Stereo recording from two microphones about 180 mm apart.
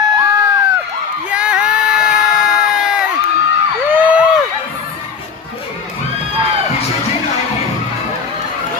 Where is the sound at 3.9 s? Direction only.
10° right (ahead or behind).